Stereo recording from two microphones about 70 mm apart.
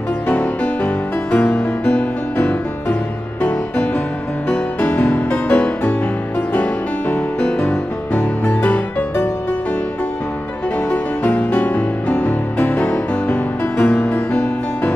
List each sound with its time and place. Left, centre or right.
0.3 s music: centre
10.9 s music: centre